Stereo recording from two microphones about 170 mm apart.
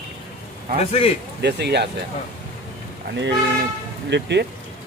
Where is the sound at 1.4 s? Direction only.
80° right.